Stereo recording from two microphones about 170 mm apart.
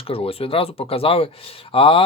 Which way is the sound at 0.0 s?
35° left (ahead or behind).